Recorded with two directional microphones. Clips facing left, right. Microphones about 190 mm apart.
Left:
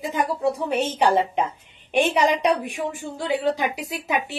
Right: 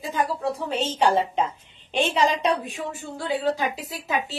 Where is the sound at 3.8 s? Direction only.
15° left (ahead or behind).